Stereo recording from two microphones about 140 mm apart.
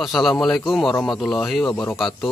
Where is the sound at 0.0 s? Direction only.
Centre (ahead or behind).